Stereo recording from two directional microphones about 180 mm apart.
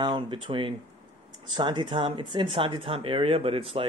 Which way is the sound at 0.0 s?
25° right (ahead or behind).